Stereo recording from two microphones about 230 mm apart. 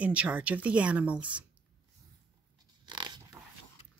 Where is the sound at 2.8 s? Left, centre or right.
Centre.